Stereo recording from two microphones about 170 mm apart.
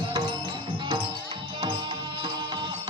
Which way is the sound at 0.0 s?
25° right (ahead or behind).